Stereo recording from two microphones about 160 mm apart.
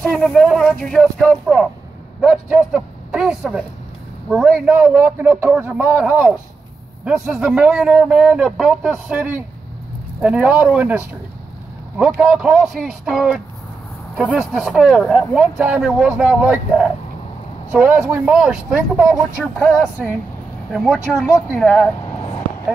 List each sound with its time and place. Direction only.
0.0 s a man's voice: 5° left (ahead or behind)